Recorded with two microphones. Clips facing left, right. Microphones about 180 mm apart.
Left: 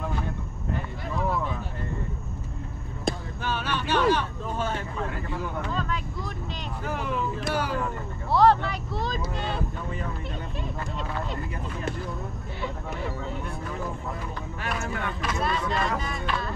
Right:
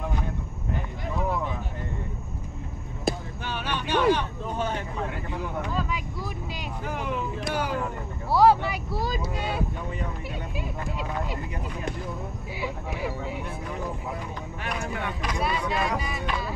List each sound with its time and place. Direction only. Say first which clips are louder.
1.2 s a sound: even; 15° right (ahead or behind)
3.1 s basketball bounce: right 1 dB; 5° right (ahead or behind)
3.4 s vehicle: left 2 dB; 15° right (ahead or behind)
7.0 s vehicle: left 1 dB; 15° right (ahead or behind)
8.3 s vehicle: right 1 dB; 5° right (ahead or behind)
14.6 s vehicle: even; 15° right (ahead or behind)